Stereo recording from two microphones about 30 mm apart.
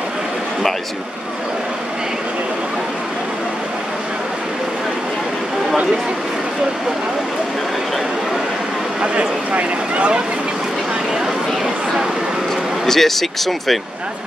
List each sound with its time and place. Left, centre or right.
9.0 s speech: right
9.5 s speech: right
11.1 s speech: centre
12.8 s speech: centre